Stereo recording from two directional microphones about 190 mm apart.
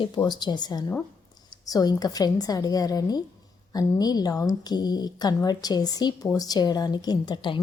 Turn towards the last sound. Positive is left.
turn(degrees=25)  # may be behind; listen again after turning